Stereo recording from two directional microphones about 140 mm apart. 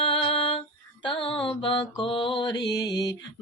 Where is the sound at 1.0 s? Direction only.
40° left (ahead or behind).